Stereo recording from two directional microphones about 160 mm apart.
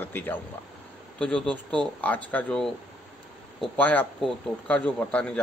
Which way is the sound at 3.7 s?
10° left (ahead or behind).